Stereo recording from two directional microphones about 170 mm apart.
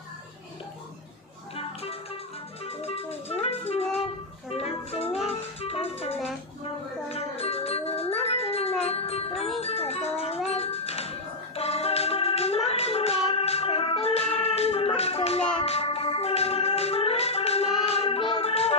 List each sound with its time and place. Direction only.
2.6 s music: 35° left (ahead or behind)